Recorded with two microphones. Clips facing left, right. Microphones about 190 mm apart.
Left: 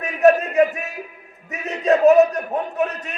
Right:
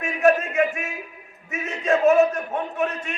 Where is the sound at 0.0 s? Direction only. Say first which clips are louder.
Left 4 dB; 40° left (ahead or behind).